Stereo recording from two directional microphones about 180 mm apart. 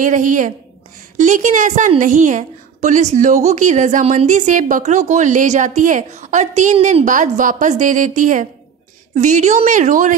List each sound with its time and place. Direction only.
0.0 s a woman's voice: 45° right (ahead or behind)